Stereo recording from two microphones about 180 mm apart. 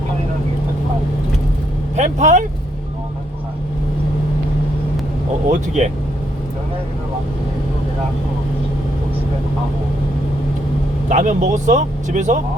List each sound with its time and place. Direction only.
2.0 s speech: 40° right (ahead or behind)
5.5 s speech: 40° right (ahead or behind)
11.1 s speech: 45° right (ahead or behind)